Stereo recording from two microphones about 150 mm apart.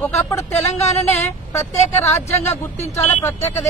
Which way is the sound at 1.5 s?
15° left (ahead or behind).